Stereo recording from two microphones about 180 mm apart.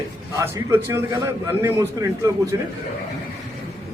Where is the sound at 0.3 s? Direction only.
15° right (ahead or behind).